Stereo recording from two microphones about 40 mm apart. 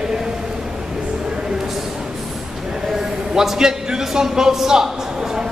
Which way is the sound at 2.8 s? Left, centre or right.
Centre.